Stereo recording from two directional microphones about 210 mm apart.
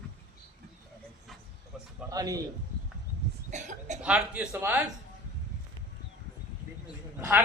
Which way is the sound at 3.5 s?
35° right (ahead or behind).